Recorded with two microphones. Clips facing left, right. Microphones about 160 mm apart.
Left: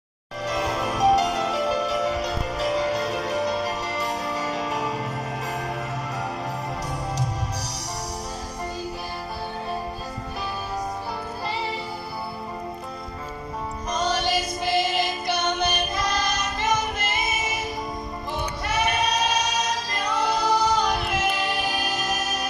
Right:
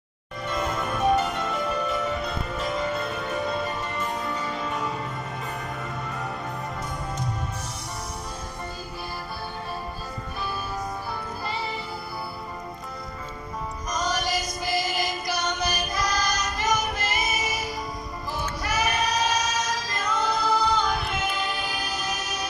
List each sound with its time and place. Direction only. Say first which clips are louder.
0.5 s music: left 2 dB; 80° left
13.8 s music: left 3 dB; 30° left (ahead or behind)
18.6 s child singing: left 2 dB; 25° left (ahead or behind)
20.1 s singing: left 2 dB; 70° left (ahead or behind)
20.4 s music: left 2 dB; 80° left